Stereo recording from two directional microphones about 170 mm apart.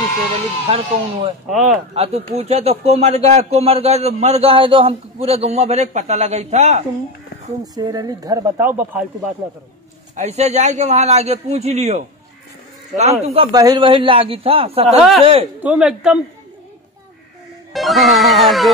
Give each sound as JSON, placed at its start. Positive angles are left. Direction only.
{"t": 0.7, "sound": "a man's voice", "side_deg": -35}
{"t": 7.7, "sound": "a woman's voice", "side_deg": -25}
{"t": 10.1, "sound": "a man's voice", "side_deg": -40}
{"t": 13.5, "sound": "a man's voice", "side_deg": -20}
{"t": 15.0, "sound": "a man's voice", "side_deg": 0}
{"t": 17.7, "sound": "speech", "side_deg": 0}